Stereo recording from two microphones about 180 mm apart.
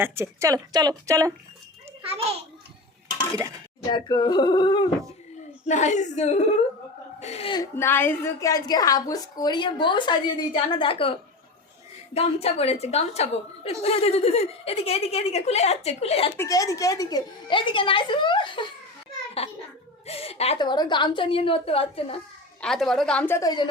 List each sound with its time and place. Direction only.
0.0 s a woman's voice: 15° right (ahead or behind)
2.0 s a child's voice: 30° right (ahead or behind)
3.8 s a woman's voice: 25° left (ahead or behind)
5.6 s a woman's voice: 40° left (ahead or behind)
7.6 s a woman's voice: 15° left (ahead or behind); by 11.1 s 30° left (ahead or behind)
12.1 s a woman's voice: 35° left (ahead or behind)
16.4 s a woman's voice: 20° left (ahead or behind)
20.1 s a woman's voice: 35° left (ahead or behind)
22.6 s a woman's voice: centre (ahead or behind); by 23.6 s 20° left (ahead or behind)